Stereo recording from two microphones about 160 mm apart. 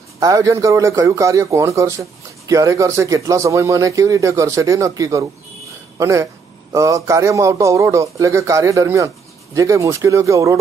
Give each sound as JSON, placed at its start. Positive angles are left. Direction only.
{"t": 0.2, "sound": "a man's voice", "side_deg": -20}